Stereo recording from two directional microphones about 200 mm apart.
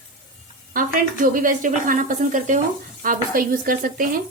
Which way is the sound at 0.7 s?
40° right (ahead or behind).